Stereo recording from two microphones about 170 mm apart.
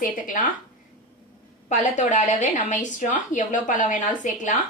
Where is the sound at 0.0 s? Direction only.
50° left (ahead or behind).